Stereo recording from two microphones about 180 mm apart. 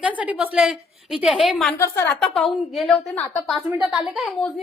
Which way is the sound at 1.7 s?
15° left (ahead or behind).